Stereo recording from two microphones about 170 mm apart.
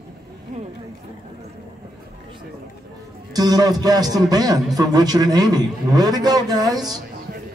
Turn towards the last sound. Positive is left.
turn(degrees=-25)  # may be behind; listen again after turning